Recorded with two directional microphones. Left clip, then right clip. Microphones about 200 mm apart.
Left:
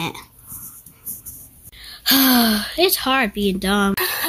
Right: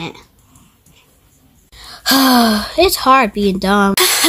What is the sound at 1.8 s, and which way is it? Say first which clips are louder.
Speech: right 4 dB; 50° right (ahead or behind).